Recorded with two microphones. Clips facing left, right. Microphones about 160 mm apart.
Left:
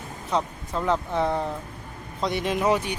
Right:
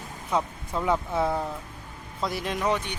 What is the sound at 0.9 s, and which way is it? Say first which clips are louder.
Speech: left 1 dB; 5° right (ahead or behind).